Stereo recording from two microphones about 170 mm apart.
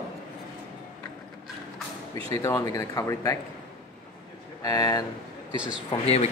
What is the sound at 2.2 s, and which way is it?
Speech, 20° left (ahead or behind).